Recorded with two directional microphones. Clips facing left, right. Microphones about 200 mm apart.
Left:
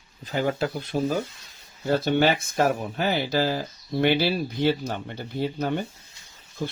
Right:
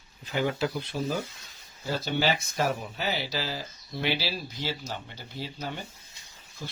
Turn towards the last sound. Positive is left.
turn(degrees=55)  # may be behind; listen again after turning